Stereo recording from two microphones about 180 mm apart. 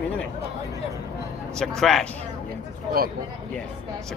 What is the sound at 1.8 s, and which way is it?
Speech, centre (ahead or behind).